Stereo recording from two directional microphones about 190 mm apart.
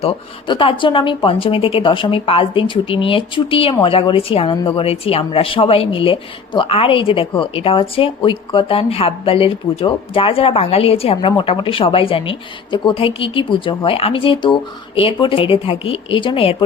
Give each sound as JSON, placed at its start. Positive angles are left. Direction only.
{"t": 0.0, "sound": "speech", "side_deg": 25}